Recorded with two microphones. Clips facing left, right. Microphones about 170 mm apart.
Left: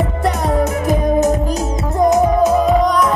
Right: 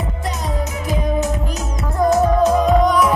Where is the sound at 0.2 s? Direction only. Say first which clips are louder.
Left 9 dB; 60° left (ahead or behind).